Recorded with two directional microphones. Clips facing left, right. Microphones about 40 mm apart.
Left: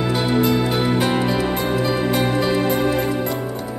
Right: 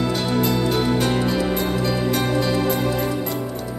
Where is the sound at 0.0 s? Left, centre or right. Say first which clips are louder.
Left 2 dB; centre.